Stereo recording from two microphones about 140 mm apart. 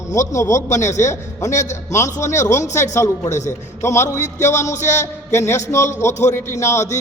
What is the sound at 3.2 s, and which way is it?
Speech, 60° left (ahead or behind).